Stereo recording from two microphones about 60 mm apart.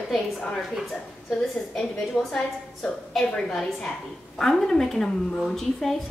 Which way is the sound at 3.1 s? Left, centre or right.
Centre.